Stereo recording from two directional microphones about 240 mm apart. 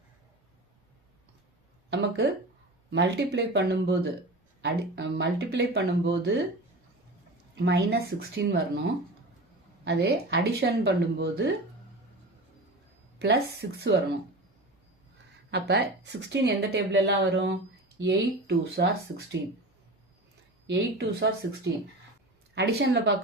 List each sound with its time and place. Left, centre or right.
1.9 s speech: right
7.6 s speech: right
9.8 s speech: right
13.1 s speech: right
15.4 s speech: right
20.7 s speech: right